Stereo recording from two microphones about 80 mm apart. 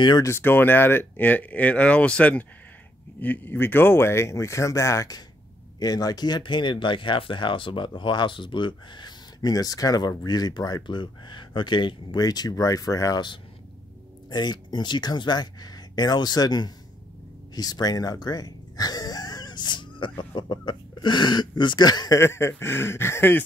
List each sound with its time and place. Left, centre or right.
0.2 s speech: left
10.9 s speech: left
12.2 s speech: left
14.3 s speech: left
22.2 s speech: left